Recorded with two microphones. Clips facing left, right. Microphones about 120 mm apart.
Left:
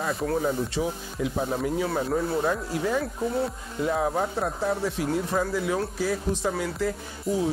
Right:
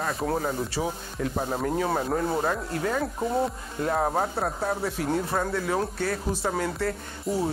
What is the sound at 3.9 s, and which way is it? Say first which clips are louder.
Speech: right 1 dB; 40° right (ahead or behind).